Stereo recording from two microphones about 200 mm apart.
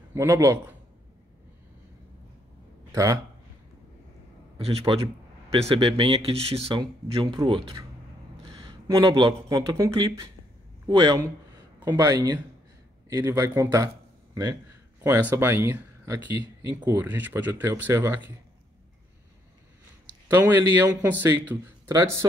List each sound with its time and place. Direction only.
0.1 s a man's voice: 15° right (ahead or behind)
2.9 s speech: 15° right (ahead or behind)
4.6 s a man's voice: 30° right (ahead or behind); by 18.2 s 10° right (ahead or behind)
20.2 s a man's voice: 10° right (ahead or behind)